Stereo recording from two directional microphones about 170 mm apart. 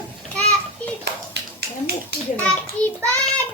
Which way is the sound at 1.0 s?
75° right (ahead or behind).